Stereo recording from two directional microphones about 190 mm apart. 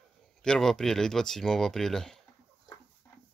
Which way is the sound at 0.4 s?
5° left (ahead or behind).